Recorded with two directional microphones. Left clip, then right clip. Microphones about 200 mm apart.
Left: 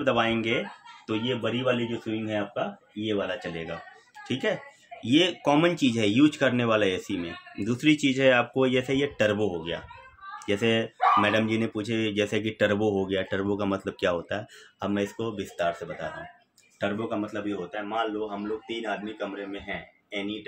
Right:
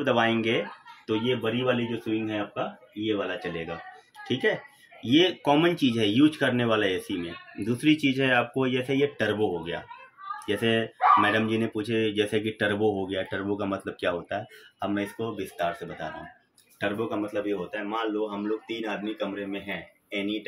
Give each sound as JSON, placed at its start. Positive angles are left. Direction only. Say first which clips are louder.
{"t": 0.0, "sound": "speech", "louder": "right 1 dB", "side_deg": 15}
{"t": 3.3, "sound": "speech", "louder": "right 1 dB", "side_deg": 25}
{"t": 16.8, "sound": "speech", "louder": "right 1 dB", "side_deg": 25}
{"t": 18.9, "sound": "speech", "louder": "right 1 dB", "side_deg": 15}